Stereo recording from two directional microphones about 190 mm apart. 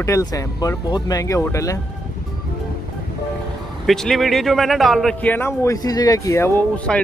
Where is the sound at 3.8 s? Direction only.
Centre (ahead or behind).